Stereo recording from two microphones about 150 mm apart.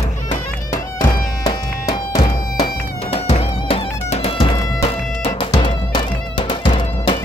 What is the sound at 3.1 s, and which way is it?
Music, 40° left (ahead or behind).